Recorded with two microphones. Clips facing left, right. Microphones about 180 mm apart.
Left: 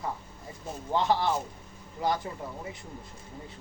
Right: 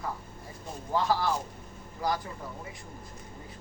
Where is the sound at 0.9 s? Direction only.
25° left (ahead or behind).